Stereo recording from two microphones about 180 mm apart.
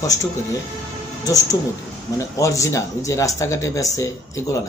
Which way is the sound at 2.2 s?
15° left (ahead or behind).